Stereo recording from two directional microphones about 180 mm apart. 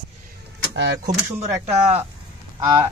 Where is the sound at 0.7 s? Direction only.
70° right (ahead or behind).